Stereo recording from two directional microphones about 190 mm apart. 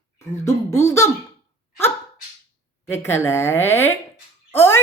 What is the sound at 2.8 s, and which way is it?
Speech, 10° left (ahead or behind).